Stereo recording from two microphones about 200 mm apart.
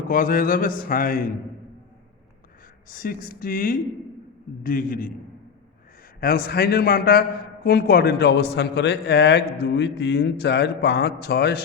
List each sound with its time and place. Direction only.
0.1 s a man's voice: 45° left (ahead or behind)
2.9 s a man's voice: 45° left (ahead or behind)
6.1 s a man's voice: 50° left (ahead or behind)